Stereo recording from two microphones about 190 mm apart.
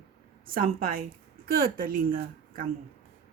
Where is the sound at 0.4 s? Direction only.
50° right (ahead or behind).